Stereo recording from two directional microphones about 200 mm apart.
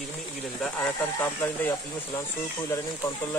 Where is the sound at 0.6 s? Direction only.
5° left (ahead or behind).